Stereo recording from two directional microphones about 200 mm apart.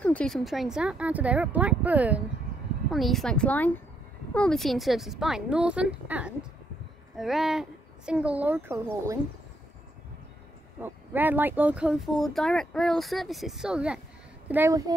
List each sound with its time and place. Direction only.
0.0 s speech: 5° left (ahead or behind); by 9.2 s 15° right (ahead or behind)
10.8 s speech: 10° right (ahead or behind)